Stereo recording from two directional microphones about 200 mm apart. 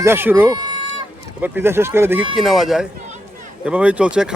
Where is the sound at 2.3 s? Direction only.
Centre (ahead or behind).